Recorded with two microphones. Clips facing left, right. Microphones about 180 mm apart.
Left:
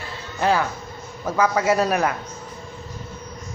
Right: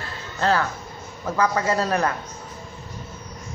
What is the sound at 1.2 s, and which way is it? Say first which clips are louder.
Speech: left 2 dB; 10° left (ahead or behind).